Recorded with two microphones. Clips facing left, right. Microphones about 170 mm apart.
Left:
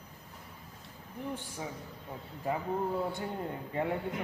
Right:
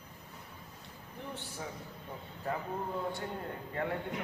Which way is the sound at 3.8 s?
15° left (ahead or behind).